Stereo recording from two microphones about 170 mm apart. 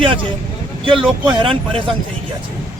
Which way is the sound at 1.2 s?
30° right (ahead or behind).